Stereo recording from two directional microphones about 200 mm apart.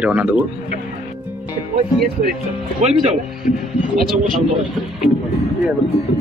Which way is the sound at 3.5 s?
40° left (ahead or behind).